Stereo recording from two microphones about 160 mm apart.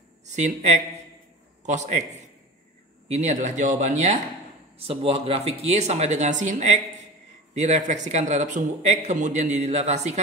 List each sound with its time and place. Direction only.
0.2 s a man's voice: 45° right (ahead or behind)
3.1 s a man's voice: 45° right (ahead or behind)